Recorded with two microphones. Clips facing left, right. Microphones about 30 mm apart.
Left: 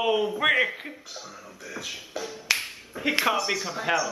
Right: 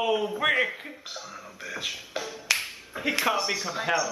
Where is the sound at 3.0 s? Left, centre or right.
Centre.